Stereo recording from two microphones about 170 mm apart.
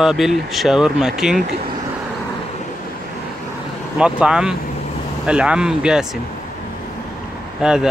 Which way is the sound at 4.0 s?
5° right (ahead or behind).